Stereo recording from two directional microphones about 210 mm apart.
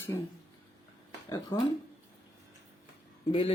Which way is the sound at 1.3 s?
20° left (ahead or behind).